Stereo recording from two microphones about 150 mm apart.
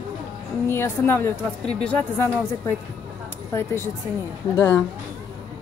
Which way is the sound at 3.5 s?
20° left (ahead or behind).